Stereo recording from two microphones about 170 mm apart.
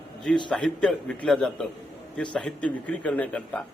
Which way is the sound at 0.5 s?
5° left (ahead or behind).